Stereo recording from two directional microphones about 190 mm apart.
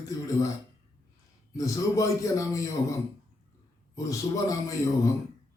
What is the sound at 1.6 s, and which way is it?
A man's voice, 15° left (ahead or behind).